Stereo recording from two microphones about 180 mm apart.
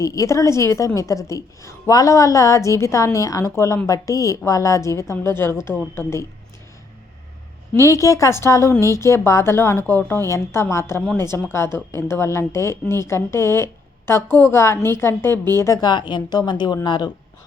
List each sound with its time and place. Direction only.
0.0 s a woman's voice: 20° left (ahead or behind)
7.7 s a woman's voice: 15° left (ahead or behind)